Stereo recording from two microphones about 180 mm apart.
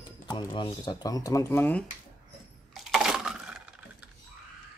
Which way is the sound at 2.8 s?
Centre (ahead or behind).